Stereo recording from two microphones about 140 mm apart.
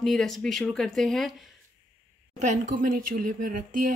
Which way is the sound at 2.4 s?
65° right (ahead or behind).